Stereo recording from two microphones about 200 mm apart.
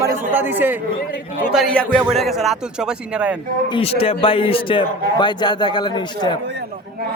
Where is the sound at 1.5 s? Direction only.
Centre (ahead or behind).